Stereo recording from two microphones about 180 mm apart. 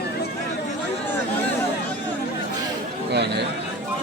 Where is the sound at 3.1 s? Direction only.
70° right (ahead or behind).